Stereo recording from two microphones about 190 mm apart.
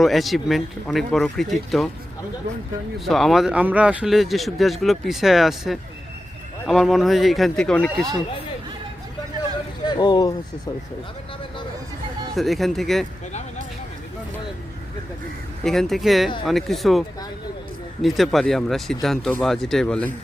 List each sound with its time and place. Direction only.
0.0 s speech: centre (ahead or behind)
3.0 s speech: centre (ahead or behind)
9.8 s speech: 20° left (ahead or behind)
12.4 s speech: centre (ahead or behind)
15.6 s speech: centre (ahead or behind)
18.0 s speech: centre (ahead or behind)